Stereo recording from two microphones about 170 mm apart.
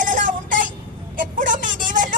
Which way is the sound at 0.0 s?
50° right (ahead or behind).